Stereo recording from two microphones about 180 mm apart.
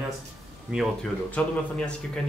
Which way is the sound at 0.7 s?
Centre (ahead or behind).